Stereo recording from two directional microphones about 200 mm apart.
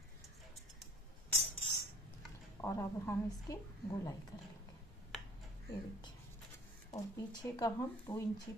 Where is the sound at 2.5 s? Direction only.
15° left (ahead or behind).